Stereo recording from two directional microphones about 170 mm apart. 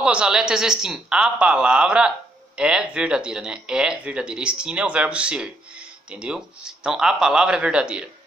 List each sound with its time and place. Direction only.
0.0 s a woman's voice: 5° right (ahead or behind)